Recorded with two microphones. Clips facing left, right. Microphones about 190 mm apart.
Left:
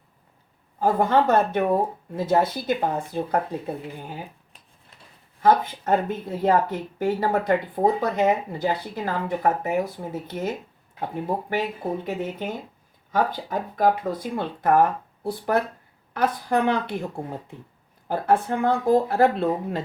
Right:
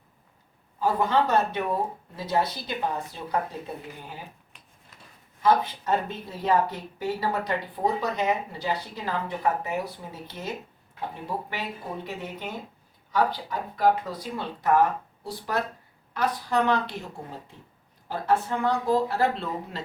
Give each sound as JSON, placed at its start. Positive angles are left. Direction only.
{"t": 0.8, "sound": "speech", "side_deg": 50}
{"t": 5.4, "sound": "speech", "side_deg": 50}
{"t": 18.1, "sound": "speech", "side_deg": 50}